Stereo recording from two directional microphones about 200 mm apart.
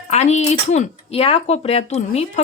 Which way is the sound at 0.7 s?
30° left (ahead or behind).